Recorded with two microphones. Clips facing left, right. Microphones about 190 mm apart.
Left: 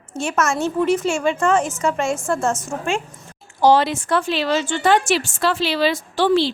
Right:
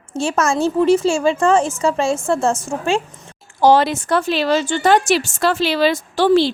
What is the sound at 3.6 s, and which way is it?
A woman's voice, 45° right (ahead or behind).